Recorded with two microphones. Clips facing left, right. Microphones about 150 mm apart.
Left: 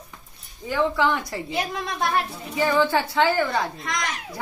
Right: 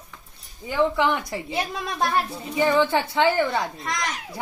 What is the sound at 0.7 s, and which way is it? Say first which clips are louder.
Speech: right 1 dB; 15° right (ahead or behind).